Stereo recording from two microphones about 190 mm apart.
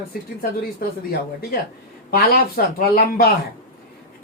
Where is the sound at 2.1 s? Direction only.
50° left (ahead or behind).